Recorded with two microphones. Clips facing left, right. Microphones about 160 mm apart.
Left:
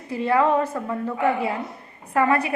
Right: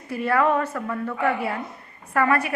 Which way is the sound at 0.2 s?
25° left (ahead or behind).